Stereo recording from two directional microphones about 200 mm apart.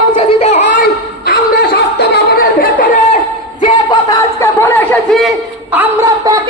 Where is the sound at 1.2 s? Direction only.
55° left (ahead or behind).